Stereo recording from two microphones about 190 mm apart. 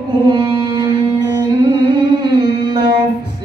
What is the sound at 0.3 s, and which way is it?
Music, 25° right (ahead or behind).